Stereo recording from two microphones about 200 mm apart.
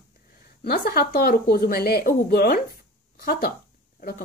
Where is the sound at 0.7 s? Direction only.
50° left (ahead or behind).